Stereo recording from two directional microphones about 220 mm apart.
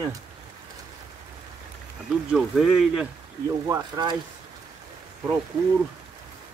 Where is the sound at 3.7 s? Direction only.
20° right (ahead or behind).